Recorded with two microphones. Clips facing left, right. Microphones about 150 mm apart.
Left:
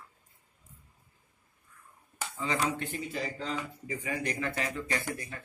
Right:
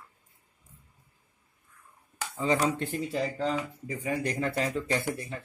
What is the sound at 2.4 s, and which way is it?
Speech, 30° right (ahead or behind).